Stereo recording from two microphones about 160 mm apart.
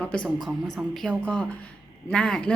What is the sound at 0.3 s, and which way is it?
Speech, centre (ahead or behind).